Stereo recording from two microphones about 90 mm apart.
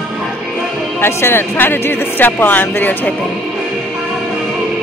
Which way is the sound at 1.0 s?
25° left (ahead or behind).